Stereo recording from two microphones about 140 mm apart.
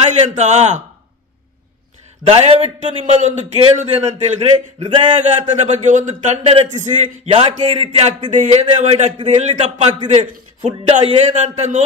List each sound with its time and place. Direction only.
0.0 s a man's voice: 55° right (ahead or behind)
2.2 s a man's voice: 45° right (ahead or behind)